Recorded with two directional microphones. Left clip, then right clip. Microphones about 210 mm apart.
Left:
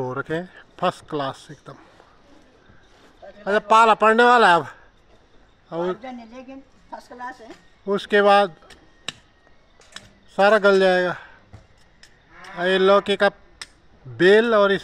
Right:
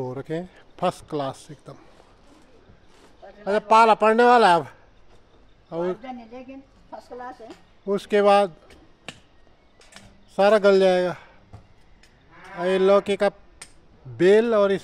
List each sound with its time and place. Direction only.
0.0 s speech: 5° right (ahead or behind)
3.4 s a man's voice: 5° left (ahead or behind)
5.9 s speech: 55° left (ahead or behind)
7.8 s speech: centre (ahead or behind)
10.3 s speech: centre (ahead or behind)
12.5 s speech: centre (ahead or behind)